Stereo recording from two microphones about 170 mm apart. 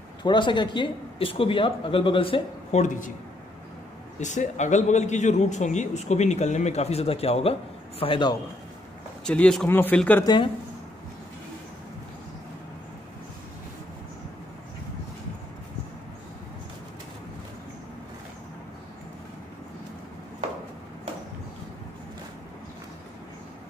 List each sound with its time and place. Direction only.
0.2 s speech: 25° left (ahead or behind)
4.2 s a man's voice: 45° left (ahead or behind); by 8.4 s 30° left (ahead or behind)
9.2 s speech: 5° left (ahead or behind)
10.2 s a man's voice: 25° left (ahead or behind)